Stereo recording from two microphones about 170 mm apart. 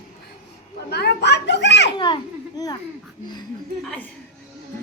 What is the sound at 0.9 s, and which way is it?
Children playing, 75° left (ahead or behind).